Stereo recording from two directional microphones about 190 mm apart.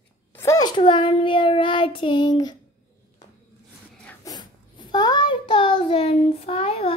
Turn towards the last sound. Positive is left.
turn(degrees=30)  # may be behind; listen again after turning